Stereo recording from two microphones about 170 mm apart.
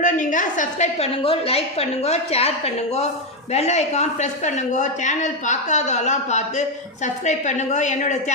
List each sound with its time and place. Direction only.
0.0 s a woman's voice: 50° left (ahead or behind)